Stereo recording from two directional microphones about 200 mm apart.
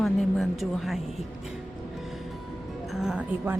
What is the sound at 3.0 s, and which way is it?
Speech, 5° right (ahead or behind).